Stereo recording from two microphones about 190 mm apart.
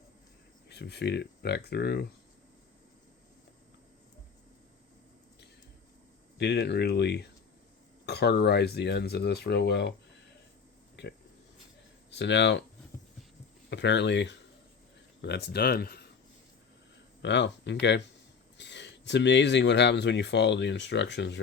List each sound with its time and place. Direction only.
0.7 s speech: 60° left (ahead or behind)
6.4 s speech: 60° left (ahead or behind)
11.0 s speech: 65° left (ahead or behind)
13.7 s speech: 65° left (ahead or behind)
17.2 s speech: 65° left (ahead or behind)